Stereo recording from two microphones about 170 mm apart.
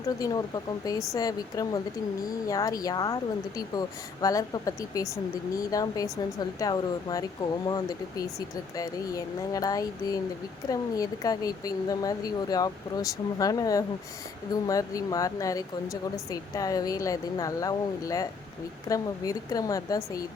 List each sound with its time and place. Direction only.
0.2 s speech: 20° left (ahead or behind)